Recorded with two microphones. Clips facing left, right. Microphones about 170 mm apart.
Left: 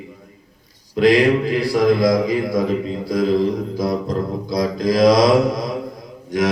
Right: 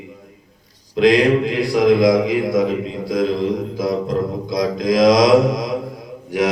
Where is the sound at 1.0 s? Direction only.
5° left (ahead or behind).